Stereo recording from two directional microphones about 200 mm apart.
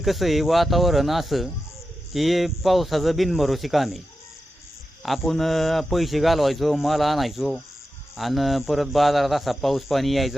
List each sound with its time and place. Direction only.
0.0 s a man's voice: centre (ahead or behind)
5.0 s a man's voice: centre (ahead or behind)